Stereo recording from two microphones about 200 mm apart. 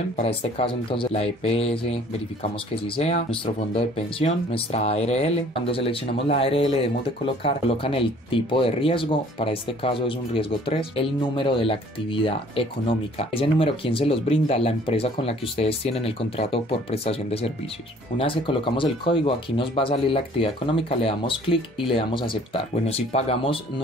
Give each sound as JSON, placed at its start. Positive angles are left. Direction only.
{"t": 0.2, "sound": "speech", "side_deg": 30}